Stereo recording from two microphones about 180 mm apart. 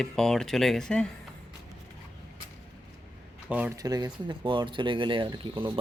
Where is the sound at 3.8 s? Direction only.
20° right (ahead or behind).